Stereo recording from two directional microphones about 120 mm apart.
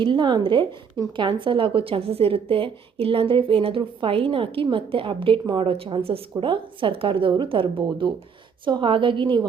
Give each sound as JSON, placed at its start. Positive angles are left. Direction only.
{"t": 0.0, "sound": "a woman's voice", "side_deg": -40}